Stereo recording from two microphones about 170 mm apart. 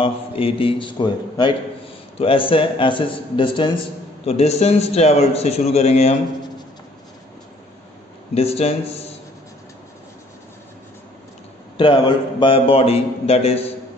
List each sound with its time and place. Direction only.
0.0 s a man's voice: 30° left (ahead or behind)
8.4 s a man's voice: 35° left (ahead or behind)
11.7 s a man's voice: 30° left (ahead or behind)